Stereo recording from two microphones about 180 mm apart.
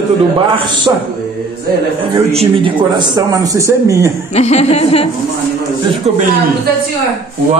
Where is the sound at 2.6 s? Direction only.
25° right (ahead or behind).